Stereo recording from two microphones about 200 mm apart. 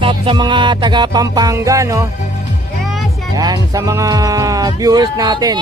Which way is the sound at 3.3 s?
20° right (ahead or behind).